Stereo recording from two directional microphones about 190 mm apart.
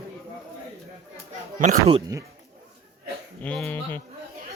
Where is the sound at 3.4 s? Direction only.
5° left (ahead or behind).